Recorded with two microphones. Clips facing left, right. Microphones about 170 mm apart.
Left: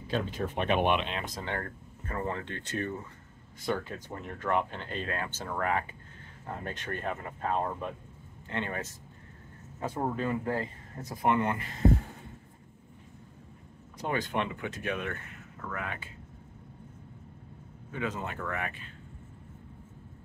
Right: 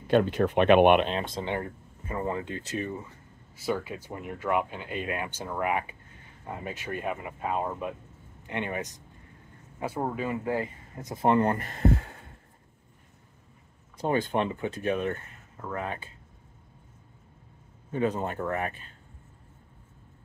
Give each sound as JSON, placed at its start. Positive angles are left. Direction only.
{"t": 0.0, "sound": "speech", "side_deg": -65}
{"t": 1.0, "sound": "speech", "side_deg": -30}
{"t": 11.1, "sound": "speech", "side_deg": -35}
{"t": 14.0, "sound": "speech", "side_deg": -35}
{"t": 17.9, "sound": "speech", "side_deg": -35}